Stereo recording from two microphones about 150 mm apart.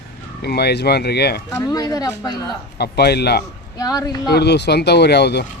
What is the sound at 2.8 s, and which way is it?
Speech, 90° left.